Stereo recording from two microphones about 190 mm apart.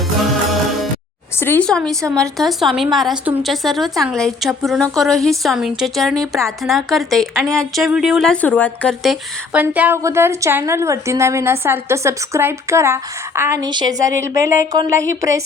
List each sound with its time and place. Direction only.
1.4 s speech: 10° left (ahead or behind)
2.0 s a woman's voice: 15° right (ahead or behind)
2.4 s a woman's voice: centre (ahead or behind); by 15.4 s 15° right (ahead or behind)